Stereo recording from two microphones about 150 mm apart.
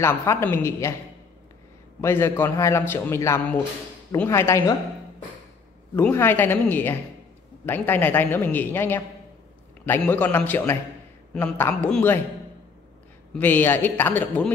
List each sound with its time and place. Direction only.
0.0 s speech: 20° left (ahead or behind)
2.0 s a man's voice: 15° left (ahead or behind)
5.9 s a man's voice: 15° left (ahead or behind)
13.3 s a man's voice: 10° left (ahead or behind)